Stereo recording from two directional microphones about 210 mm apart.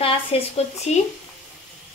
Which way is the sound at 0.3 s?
25° left (ahead or behind).